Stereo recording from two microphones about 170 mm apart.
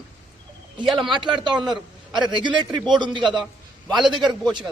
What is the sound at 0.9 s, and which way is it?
Speech, centre (ahead or behind).